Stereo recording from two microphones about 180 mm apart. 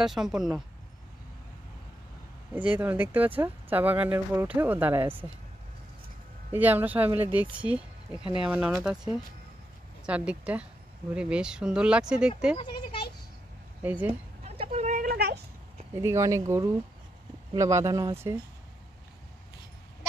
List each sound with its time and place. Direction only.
0.0 s speech: centre (ahead or behind)
2.5 s speech: 10° right (ahead or behind)
6.5 s speech: 10° right (ahead or behind)
12.5 s speech: 25° left (ahead or behind)
13.8 s speech: 10° right (ahead or behind)
14.4 s a sound: 35° right (ahead or behind); by 15.4 s 60° right (ahead or behind)
15.9 s speech: 15° right (ahead or behind)